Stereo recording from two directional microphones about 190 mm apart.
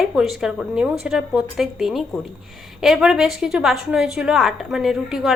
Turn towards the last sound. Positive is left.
turn(degrees=0)  # may be behind; listen again after turning